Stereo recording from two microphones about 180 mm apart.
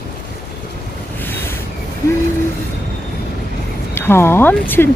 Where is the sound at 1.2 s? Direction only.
10° left (ahead or behind).